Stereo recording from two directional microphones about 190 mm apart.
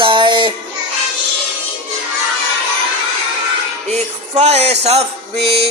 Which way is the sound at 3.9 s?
35° right (ahead or behind).